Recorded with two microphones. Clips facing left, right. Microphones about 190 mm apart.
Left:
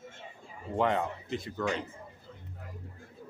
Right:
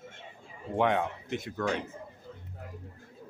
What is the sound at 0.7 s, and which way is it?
Speech, centre (ahead or behind).